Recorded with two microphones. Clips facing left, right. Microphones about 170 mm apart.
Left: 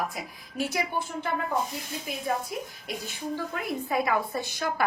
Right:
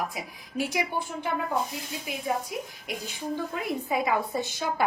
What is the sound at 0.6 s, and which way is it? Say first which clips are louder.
Speech: even; 15° right (ahead or behind).